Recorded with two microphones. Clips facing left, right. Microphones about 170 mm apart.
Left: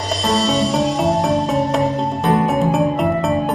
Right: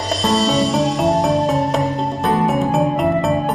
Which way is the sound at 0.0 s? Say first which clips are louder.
Right 1 dB; centre (ahead or behind).